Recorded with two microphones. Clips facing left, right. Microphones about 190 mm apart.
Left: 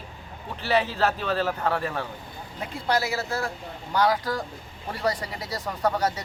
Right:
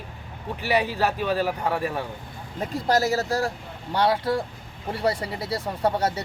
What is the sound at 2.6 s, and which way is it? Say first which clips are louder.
Speech: right 4 dB; 40° right (ahead or behind).